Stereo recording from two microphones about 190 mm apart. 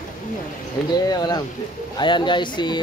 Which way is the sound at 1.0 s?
20° left (ahead or behind).